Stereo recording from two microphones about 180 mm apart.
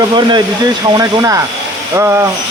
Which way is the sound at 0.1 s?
25° right (ahead or behind).